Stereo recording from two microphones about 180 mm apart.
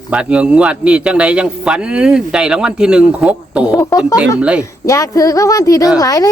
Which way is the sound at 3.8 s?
15° left (ahead or behind).